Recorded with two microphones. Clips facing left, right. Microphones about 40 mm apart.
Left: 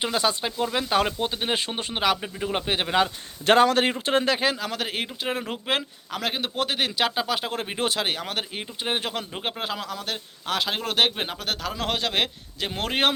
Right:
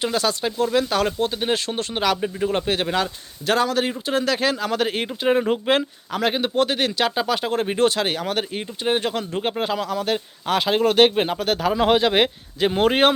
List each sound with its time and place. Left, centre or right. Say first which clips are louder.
0.0 s speech: right 2 dB; centre
3.4 s a man's voice: left 2 dB; left
4.1 s speech: right 1 dB; left
4.4 s a man's voice: right 4 dB; centre